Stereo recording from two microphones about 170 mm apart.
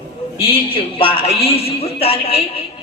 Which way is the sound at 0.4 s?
30° left (ahead or behind).